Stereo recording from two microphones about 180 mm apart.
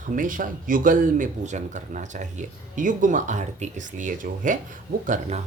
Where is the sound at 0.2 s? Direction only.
50° right (ahead or behind).